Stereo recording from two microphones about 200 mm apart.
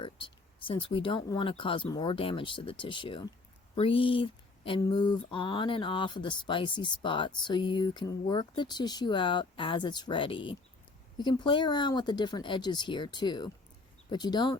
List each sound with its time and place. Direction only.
0.0 s speech: 25° left (ahead or behind)